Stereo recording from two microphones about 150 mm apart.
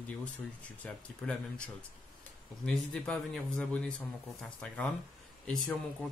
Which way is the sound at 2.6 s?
5° left (ahead or behind).